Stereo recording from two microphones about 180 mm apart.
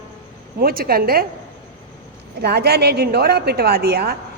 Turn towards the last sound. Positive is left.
turn(degrees=-60)  # may be behind; listen again after turning